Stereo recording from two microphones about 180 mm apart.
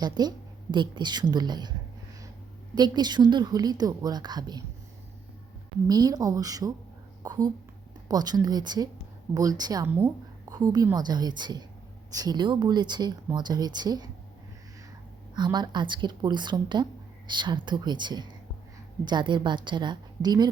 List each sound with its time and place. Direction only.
0.0 s speech: 25° right (ahead or behind)
2.7 s speech: 25° right (ahead or behind)
5.9 s speech: 20° right (ahead or behind)
15.4 s speech: 25° right (ahead or behind)